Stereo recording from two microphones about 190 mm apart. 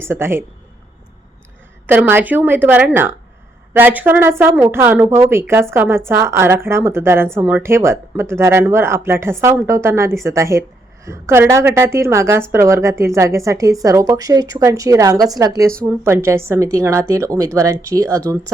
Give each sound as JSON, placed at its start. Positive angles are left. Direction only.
{"t": 0.0, "sound": "speech", "side_deg": -10}
{"t": 1.9, "sound": "speech", "side_deg": -10}